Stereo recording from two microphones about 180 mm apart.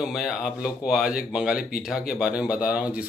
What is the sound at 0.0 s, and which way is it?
Speech, centre (ahead or behind).